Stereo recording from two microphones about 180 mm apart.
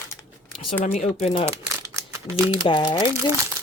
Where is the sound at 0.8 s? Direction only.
40° left (ahead or behind).